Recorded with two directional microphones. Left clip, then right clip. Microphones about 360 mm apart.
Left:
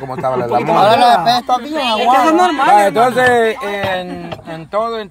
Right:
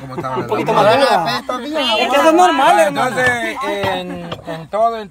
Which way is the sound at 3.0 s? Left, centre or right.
Centre.